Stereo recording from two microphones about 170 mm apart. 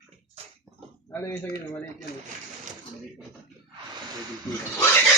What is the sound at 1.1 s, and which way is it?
Speech, 15° left (ahead or behind).